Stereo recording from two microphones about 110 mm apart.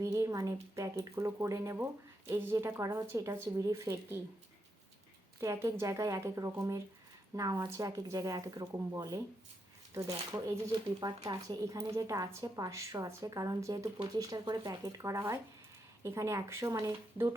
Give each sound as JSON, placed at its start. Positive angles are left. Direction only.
{"t": 0.0, "sound": "speech", "side_deg": -30}
{"t": 5.4, "sound": "speech", "side_deg": -30}